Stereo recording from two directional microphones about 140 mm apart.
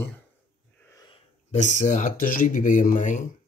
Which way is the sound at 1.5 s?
60° left (ahead or behind).